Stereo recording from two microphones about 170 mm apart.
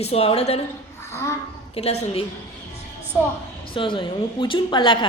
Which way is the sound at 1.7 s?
40° left (ahead or behind).